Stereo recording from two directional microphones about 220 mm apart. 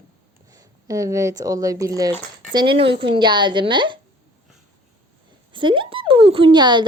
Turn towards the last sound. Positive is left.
turn(degrees=-20)  # may be behind; listen again after turning